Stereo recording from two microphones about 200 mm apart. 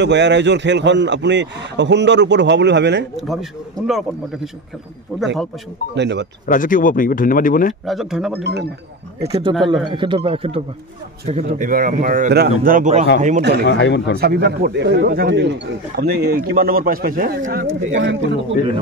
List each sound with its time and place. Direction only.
0.0 s a man's voice: 60° right (ahead or behind)
3.2 s speech: centre (ahead or behind)
5.9 s a man's voice: 60° right (ahead or behind)
6.4 s speech: 40° left (ahead or behind)
7.8 s speech: centre (ahead or behind)
9.2 s a man's voice: 30° right (ahead or behind)
11.4 s speech: 45° right (ahead or behind)
13.4 s a man's voice: 55° right (ahead or behind)
13.7 s speech: 60° left (ahead or behind)
14.1 s speech: 50° right (ahead or behind)
17.9 s a man's voice: 65° right (ahead or behind)